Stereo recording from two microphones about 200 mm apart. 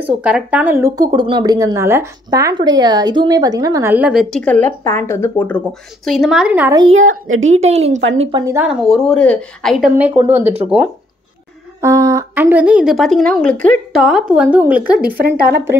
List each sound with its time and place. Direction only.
0.0 s speech: 5° right (ahead or behind)
6.9 s a woman's voice: 90° right
7.6 s a woman's voice: 35° right (ahead or behind)
8.2 s speech: 25° right (ahead or behind)
8.5 s speech: 5° right (ahead or behind)
9.9 s speech: 10° right (ahead or behind)